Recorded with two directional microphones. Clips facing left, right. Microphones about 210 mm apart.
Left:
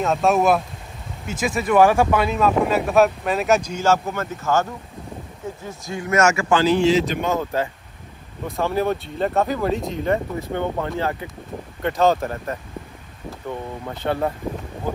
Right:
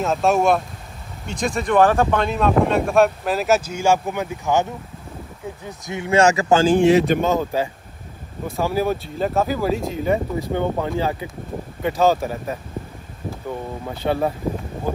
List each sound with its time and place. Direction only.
0.0 s speech: centre (ahead or behind); by 7.2 s 55° right (ahead or behind)
7.2 s speech: 15° right (ahead or behind)
8.5 s speech: 5° right (ahead or behind)